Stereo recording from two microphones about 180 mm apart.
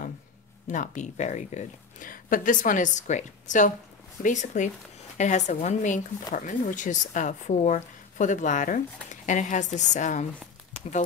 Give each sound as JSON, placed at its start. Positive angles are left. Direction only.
{"t": 0.7, "sound": "speech", "side_deg": 45}